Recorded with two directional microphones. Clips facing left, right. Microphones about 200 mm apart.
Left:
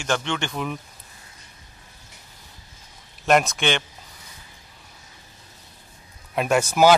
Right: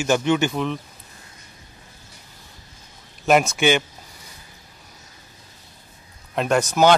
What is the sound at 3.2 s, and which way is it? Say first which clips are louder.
Speech: right 3 dB; 5° right (ahead or behind).